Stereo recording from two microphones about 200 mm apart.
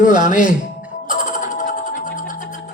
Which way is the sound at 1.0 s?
40° left (ahead or behind).